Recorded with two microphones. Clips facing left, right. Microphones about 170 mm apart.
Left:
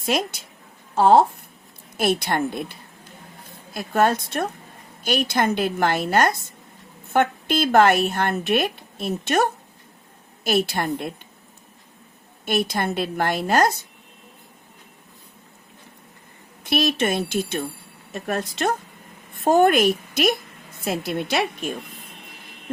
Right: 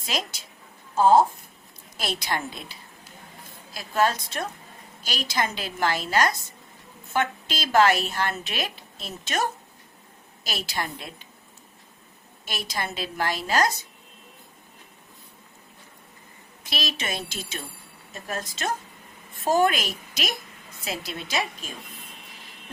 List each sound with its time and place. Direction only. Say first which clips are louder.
0.0 s a woman's voice: left 8 dB; 55° left (ahead or behind)
2.0 s a woman's voice: left 8 dB; 55° left (ahead or behind)
12.5 s a woman's voice: left 9 dB; 55° left (ahead or behind)
16.6 s a woman's voice: left 10 dB; 55° left (ahead or behind)